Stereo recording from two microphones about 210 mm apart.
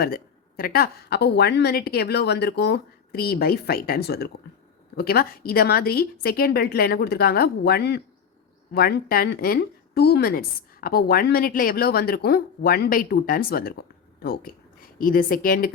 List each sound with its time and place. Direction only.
0.0 s speech: 45° left (ahead or behind)